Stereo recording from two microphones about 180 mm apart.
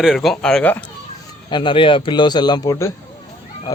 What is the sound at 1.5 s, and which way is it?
A man's voice, 25° left (ahead or behind).